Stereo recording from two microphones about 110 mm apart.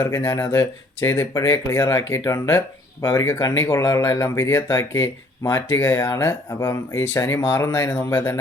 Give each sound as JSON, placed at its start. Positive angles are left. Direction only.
{"t": 0.0, "sound": "speech", "side_deg": 25}